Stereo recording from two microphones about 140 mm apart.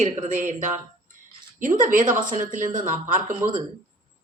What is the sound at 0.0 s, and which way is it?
Speech, 60° right (ahead or behind).